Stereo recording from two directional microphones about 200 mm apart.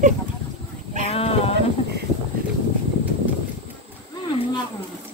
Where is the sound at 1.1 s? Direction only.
30° left (ahead or behind).